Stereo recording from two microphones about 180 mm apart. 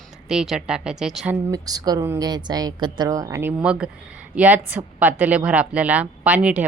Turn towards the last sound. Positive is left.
turn(degrees=-5)  # may be behind; listen again after turning